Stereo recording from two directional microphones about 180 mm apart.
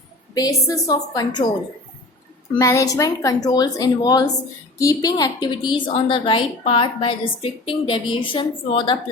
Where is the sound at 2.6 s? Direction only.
20° left (ahead or behind).